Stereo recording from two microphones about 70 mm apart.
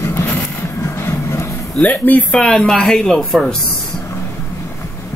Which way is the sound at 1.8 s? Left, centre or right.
Left.